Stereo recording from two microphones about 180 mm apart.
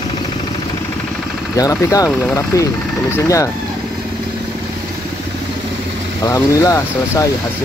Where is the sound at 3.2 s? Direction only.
15° left (ahead or behind).